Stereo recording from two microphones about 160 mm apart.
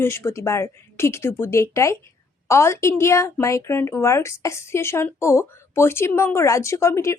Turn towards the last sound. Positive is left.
turn(degrees=20)  # may be behind; listen again after turning